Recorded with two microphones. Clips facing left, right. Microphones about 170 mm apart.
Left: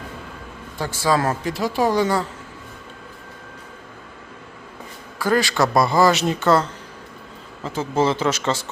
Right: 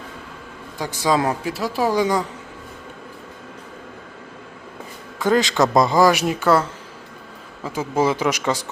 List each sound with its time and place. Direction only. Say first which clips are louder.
0.8 s speech: even; 15° right (ahead or behind)
1.5 s speech: left 1 dB; 5° right (ahead or behind)
5.2 s speech: right 2 dB; 20° right (ahead or behind)